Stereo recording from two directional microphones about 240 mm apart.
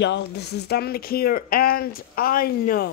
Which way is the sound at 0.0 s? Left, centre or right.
Left.